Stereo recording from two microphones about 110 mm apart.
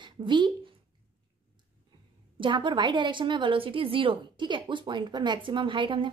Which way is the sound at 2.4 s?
50° right (ahead or behind).